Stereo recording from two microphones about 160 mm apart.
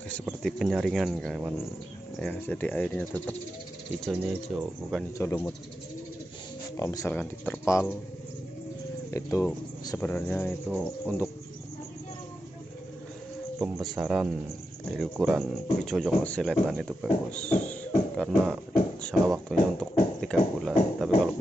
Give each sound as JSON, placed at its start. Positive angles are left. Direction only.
{"t": 0.4, "sound": "speech", "side_deg": 0}
{"t": 4.5, "sound": "speech", "side_deg": -5}
{"t": 5.1, "sound": "speech", "side_deg": 15}
{"t": 6.8, "sound": "speech", "side_deg": 20}
{"t": 9.1, "sound": "speech", "side_deg": 20}
{"t": 9.9, "sound": "speech", "side_deg": 10}
{"t": 13.6, "sound": "speech", "side_deg": -5}
{"t": 17.3, "sound": "beatboxing", "side_deg": 5}